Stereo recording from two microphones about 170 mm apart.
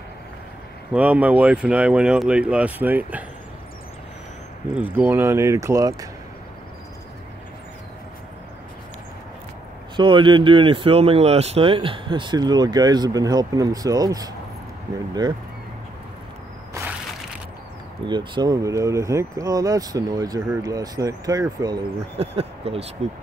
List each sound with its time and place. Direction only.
0.9 s speech: 10° right (ahead or behind)
4.7 s speech: 10° right (ahead or behind)
9.9 s speech: 30° right (ahead or behind)
18.0 s speech: 25° right (ahead or behind)
22.2 s speech: 35° right (ahead or behind)